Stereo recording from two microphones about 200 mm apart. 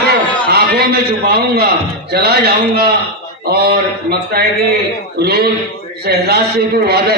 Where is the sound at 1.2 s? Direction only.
50° right (ahead or behind).